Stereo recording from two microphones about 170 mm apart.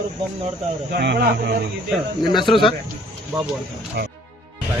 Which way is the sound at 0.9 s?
80° right.